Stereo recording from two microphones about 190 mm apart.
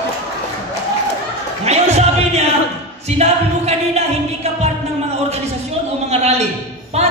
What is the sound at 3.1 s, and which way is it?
Speech, 35° right (ahead or behind).